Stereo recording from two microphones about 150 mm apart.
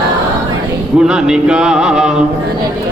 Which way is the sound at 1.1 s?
5° right (ahead or behind).